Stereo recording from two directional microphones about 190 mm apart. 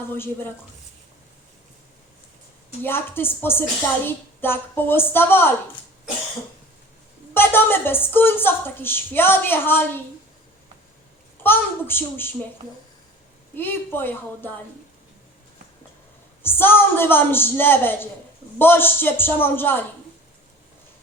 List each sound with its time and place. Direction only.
0.1 s a woman's voice: 10° left (ahead or behind)
2.8 s a woman's voice: 10° left (ahead or behind)
7.3 s a woman's voice: 10° left (ahead or behind)
11.4 s a woman's voice: 10° left (ahead or behind)
13.6 s a woman's voice: 10° left (ahead or behind)
16.4 s a woman's voice: 10° left (ahead or behind)